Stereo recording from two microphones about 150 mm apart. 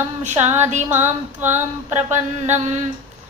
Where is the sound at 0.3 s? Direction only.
15° right (ahead or behind).